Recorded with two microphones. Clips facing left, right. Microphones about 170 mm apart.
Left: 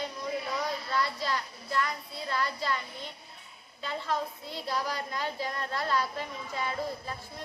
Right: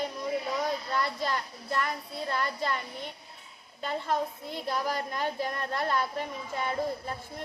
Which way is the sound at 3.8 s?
50° right (ahead or behind).